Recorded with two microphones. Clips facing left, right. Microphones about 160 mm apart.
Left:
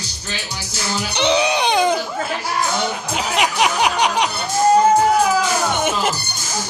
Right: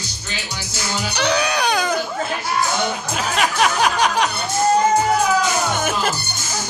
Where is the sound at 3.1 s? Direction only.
15° left (ahead or behind).